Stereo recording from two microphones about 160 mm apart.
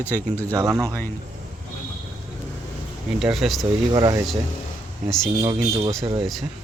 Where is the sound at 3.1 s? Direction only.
Centre (ahead or behind).